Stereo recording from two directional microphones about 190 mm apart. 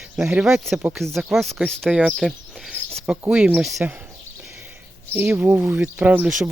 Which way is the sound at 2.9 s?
5° right (ahead or behind).